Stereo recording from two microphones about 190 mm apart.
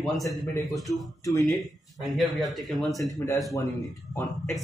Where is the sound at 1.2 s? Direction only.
15° left (ahead or behind).